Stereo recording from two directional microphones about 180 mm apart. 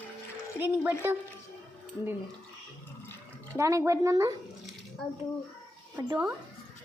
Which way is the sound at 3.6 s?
15° right (ahead or behind).